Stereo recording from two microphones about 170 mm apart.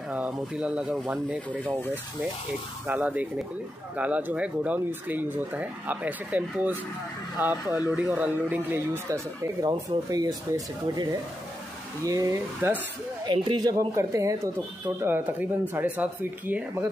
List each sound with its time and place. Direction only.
0.1 s speech: 5° right (ahead or behind)
2.9 s speech: 10° right (ahead or behind)
12.0 s speech: 20° right (ahead or behind)
13.2 s speech: 25° right (ahead or behind); by 16.9 s 10° right (ahead or behind)